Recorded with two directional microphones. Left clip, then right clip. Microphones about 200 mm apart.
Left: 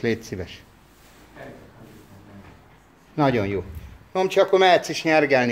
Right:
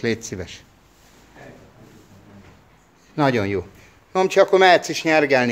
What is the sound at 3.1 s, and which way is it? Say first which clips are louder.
Speech: right 2 dB; 15° right (ahead or behind).